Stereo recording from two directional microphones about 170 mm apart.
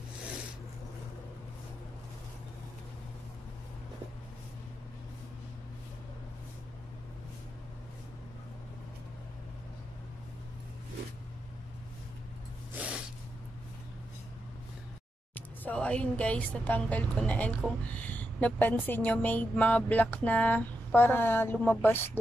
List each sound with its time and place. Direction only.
12.7 s snort: 5° right (ahead or behind)
15.3 s speech: 10° left (ahead or behind)